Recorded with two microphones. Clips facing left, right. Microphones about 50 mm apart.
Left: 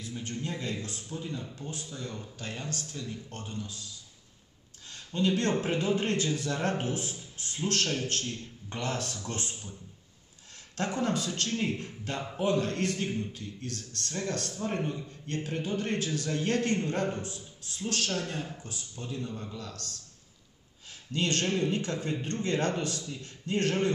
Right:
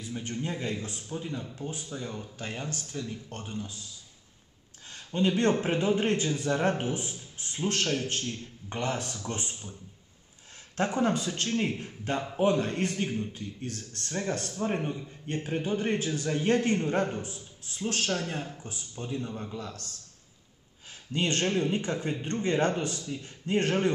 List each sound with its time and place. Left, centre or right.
0.0 s a man's voice: centre
4.9 s a man's voice: right
10.8 s a man's voice: centre
21.1 s a man's voice: right